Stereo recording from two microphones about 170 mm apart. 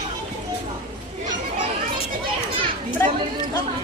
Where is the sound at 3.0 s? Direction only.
15° left (ahead or behind).